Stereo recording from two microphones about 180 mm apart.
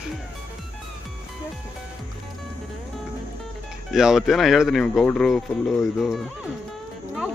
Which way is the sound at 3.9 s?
Centre (ahead or behind).